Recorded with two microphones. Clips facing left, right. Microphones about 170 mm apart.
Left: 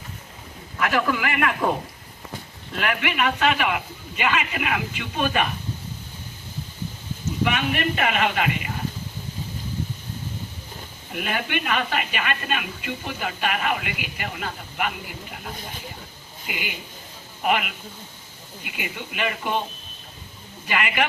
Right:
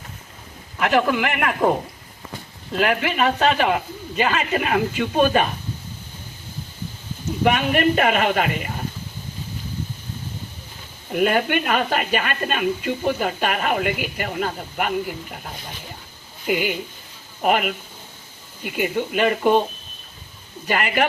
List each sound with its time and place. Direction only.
0.8 s a man's voice: 25° right (ahead or behind)
2.7 s speech: 35° right (ahead or behind)
7.4 s speech: 45° right (ahead or behind)
11.1 s speech: 45° right (ahead or behind)
16.5 s speech: 45° right (ahead or behind)
20.7 s speech: 40° right (ahead or behind)